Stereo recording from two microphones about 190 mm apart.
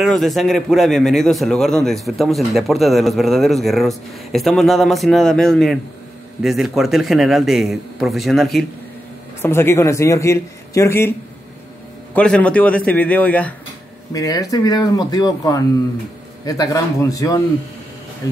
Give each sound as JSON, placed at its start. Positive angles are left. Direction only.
{"t": 0.0, "sound": "a man's voice", "side_deg": 0}
{"t": 9.4, "sound": "a man's voice", "side_deg": 10}
{"t": 14.1, "sound": "a man's voice", "side_deg": 20}